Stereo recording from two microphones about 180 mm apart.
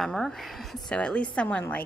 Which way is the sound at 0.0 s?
Centre (ahead or behind).